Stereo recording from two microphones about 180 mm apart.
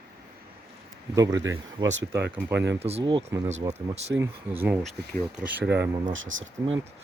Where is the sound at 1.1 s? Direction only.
20° right (ahead or behind).